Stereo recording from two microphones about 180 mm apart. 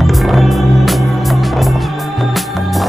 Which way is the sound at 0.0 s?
Centre (ahead or behind).